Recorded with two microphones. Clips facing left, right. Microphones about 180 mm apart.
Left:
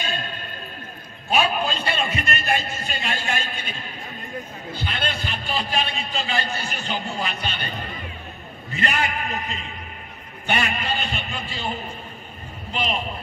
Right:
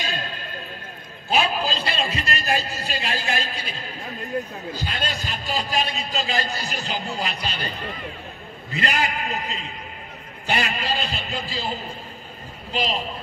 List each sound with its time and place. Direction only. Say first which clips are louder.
0.0 s music: even; 35° right (ahead or behind)
1.3 s a sound: left 1 dB; 30° right (ahead or behind)
4.7 s a man's voice: left 2 dB; 40° right (ahead or behind)
8.7 s a man's voice: even; 35° right (ahead or behind)